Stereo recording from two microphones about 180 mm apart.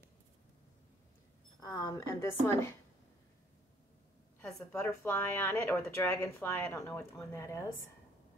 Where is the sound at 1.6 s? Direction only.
20° left (ahead or behind).